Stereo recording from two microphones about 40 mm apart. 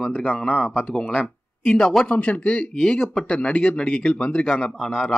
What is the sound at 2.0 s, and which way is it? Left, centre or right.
Speech, left.